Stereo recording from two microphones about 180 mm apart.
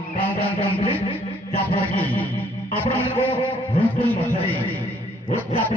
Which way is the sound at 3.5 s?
30° left (ahead or behind).